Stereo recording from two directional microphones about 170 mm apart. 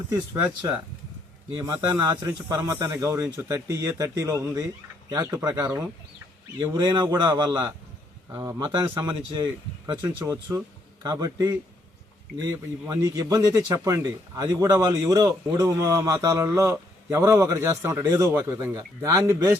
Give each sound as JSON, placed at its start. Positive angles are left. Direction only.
{"t": 1.6, "sound": "a man's voice", "side_deg": -20}